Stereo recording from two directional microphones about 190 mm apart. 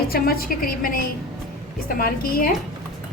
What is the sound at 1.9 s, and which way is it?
Speech, 50° left (ahead or behind).